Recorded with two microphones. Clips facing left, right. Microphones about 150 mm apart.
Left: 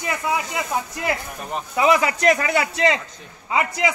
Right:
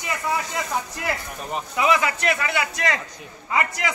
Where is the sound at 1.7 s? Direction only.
30° left (ahead or behind).